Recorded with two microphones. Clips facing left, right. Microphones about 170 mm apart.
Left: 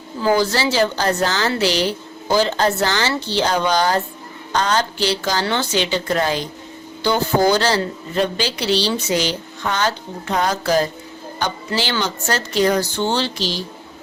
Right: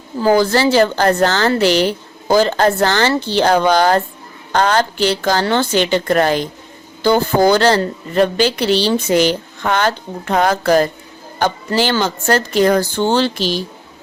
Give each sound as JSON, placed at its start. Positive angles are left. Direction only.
{"t": 0.2, "sound": "a woman's voice", "side_deg": -45}